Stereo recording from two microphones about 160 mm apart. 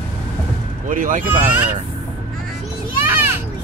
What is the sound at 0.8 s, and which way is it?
Speech, 50° right (ahead or behind).